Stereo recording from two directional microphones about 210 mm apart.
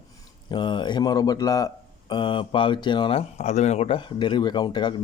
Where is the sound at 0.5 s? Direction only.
20° left (ahead or behind).